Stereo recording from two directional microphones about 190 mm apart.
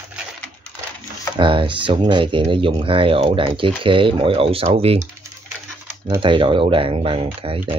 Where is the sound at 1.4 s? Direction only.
25° right (ahead or behind).